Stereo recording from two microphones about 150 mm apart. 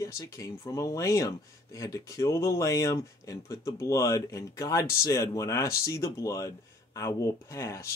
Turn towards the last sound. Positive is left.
turn(degrees=20)  # may be behind; listen again after turning